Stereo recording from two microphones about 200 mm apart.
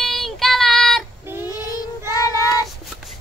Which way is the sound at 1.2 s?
10° right (ahead or behind).